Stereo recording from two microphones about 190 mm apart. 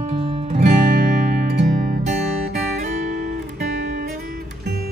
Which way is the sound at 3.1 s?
45° right (ahead or behind).